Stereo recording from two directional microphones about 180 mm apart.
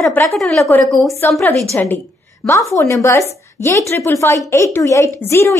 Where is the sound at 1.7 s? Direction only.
15° left (ahead or behind).